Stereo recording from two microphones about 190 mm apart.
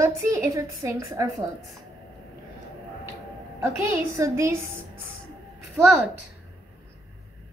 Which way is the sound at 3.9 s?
15° right (ahead or behind).